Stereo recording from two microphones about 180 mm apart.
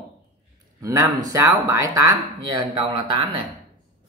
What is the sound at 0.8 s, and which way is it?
Speech, 20° right (ahead or behind).